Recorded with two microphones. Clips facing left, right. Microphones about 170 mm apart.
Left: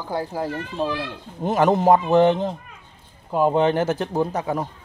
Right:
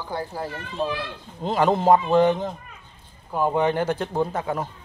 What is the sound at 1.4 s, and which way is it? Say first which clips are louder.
Speech: left 2 dB; 20° left (ahead or behind).